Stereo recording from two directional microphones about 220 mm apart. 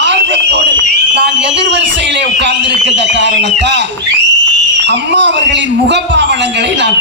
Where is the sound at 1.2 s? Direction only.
55° right (ahead or behind).